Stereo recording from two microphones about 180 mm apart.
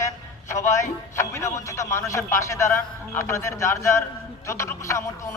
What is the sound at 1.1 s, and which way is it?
A man's voice, 15° left (ahead or behind).